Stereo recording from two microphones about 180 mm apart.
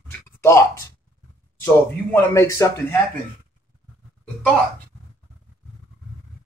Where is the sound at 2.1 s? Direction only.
15° left (ahead or behind).